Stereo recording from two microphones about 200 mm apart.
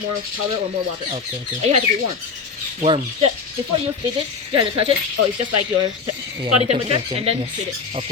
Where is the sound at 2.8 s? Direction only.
25° right (ahead or behind).